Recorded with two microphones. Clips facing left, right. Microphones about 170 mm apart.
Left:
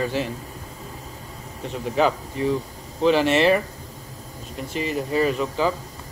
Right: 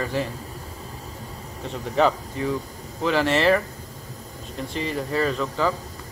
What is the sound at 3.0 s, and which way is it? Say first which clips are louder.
Speech: left 3 dB; 20° left (ahead or behind).